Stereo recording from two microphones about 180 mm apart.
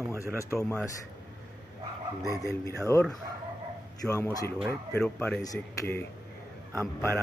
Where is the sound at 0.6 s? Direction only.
5° left (ahead or behind).